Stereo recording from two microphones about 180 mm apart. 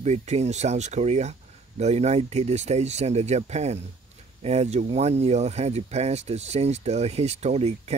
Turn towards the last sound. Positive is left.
turn(degrees=-40)  # may be behind; listen again after turning